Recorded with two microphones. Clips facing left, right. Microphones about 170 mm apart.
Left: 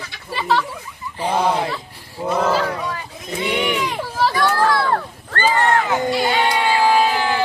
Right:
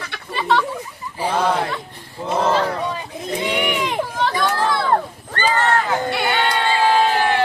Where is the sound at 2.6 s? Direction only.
25° right (ahead or behind).